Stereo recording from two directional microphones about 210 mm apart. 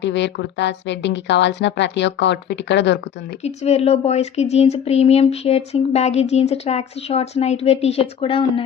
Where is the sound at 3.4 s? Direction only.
30° left (ahead or behind).